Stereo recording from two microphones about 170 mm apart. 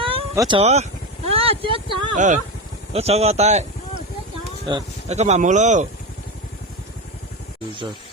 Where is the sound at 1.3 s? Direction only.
30° right (ahead or behind).